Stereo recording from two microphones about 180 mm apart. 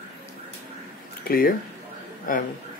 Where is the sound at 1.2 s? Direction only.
55° left (ahead or behind).